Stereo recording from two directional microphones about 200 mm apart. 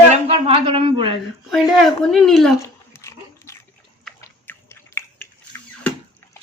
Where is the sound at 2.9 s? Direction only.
15° left (ahead or behind).